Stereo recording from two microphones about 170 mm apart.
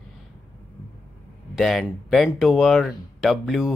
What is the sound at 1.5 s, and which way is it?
Speech, centre (ahead or behind).